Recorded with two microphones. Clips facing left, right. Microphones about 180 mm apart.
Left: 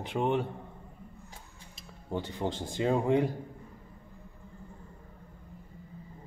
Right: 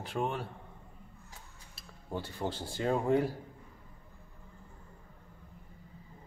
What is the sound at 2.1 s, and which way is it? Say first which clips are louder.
Speech: left 3 dB; 20° left (ahead or behind).